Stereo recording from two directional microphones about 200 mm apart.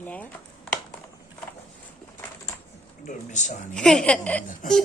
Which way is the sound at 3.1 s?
35° left (ahead or behind).